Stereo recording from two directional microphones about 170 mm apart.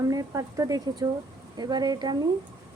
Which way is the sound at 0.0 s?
20° right (ahead or behind).